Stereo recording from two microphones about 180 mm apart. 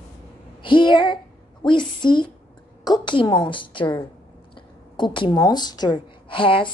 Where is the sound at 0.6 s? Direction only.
25° left (ahead or behind).